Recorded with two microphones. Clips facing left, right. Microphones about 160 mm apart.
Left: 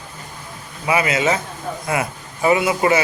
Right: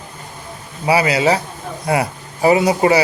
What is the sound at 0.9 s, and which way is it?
A man's voice, 35° right (ahead or behind).